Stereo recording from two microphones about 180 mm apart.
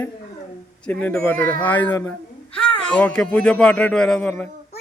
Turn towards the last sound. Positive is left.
turn(degrees=10)  # may be behind; listen again after turning